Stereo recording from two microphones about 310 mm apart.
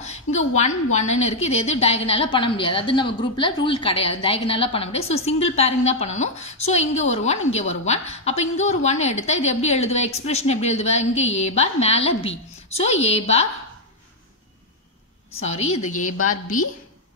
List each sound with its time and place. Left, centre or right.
0.0 s a sound: left
0.9 s a woman's voice: left
15.3 s a woman's voice: left